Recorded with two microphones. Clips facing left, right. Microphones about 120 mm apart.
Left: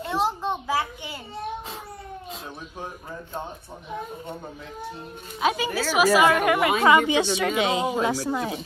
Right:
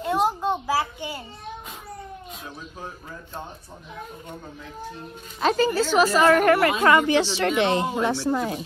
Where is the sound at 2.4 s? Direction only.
20° left (ahead or behind).